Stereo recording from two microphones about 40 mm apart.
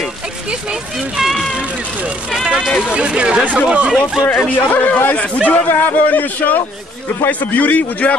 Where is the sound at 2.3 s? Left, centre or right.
Centre.